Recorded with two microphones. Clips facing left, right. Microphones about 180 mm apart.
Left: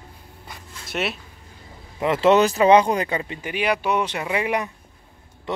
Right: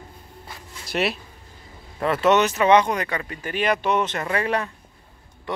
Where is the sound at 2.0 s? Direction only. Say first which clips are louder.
Left 2 dB; 25° left (ahead or behind).